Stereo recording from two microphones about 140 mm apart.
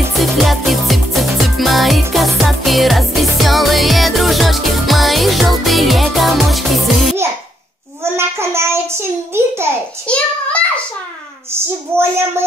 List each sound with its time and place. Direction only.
0.2 s music: centre (ahead or behind)
8.0 s a child's voice: 20° right (ahead or behind)
10.0 s a child's voice: 10° left (ahead or behind)
11.5 s speech: 15° right (ahead or behind)